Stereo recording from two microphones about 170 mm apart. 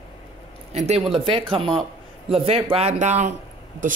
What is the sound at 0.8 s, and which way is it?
Speech, 35° right (ahead or behind).